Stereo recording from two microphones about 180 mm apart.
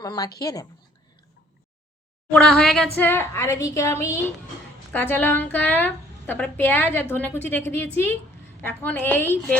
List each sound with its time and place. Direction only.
0.0 s a woman's voice: 20° left (ahead or behind)
2.3 s a woman's voice: 5° left (ahead or behind)